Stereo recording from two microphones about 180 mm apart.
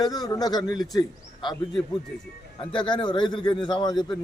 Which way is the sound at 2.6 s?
25° left (ahead or behind).